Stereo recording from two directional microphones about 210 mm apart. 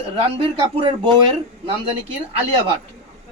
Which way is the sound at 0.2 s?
25° right (ahead or behind).